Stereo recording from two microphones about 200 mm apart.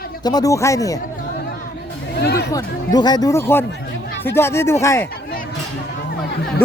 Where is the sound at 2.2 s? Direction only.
55° left (ahead or behind).